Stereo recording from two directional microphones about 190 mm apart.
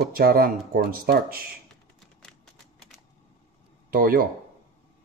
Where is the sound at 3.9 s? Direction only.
50° right (ahead or behind).